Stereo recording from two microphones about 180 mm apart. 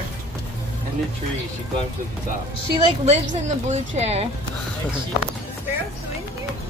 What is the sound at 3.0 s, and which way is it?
A woman's voice, 40° right (ahead or behind).